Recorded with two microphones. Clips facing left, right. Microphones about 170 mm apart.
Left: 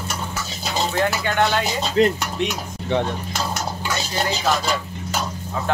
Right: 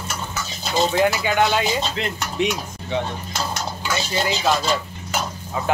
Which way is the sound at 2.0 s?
40° left (ahead or behind).